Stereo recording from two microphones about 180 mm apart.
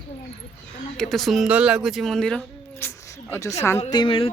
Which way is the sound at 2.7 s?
15° left (ahead or behind).